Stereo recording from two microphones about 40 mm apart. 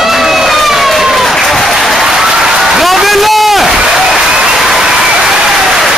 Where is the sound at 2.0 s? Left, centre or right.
Centre.